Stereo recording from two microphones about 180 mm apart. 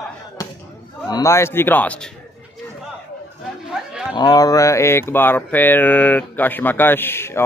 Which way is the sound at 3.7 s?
5° right (ahead or behind).